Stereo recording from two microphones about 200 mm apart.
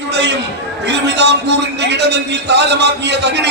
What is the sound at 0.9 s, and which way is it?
A man's voice, 60° right (ahead or behind).